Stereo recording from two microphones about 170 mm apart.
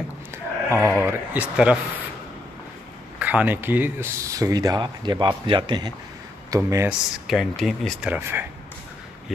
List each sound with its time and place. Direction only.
0.7 s speech: 15° right (ahead or behind)
3.2 s speech: 10° right (ahead or behind)
6.9 s speech: centre (ahead or behind)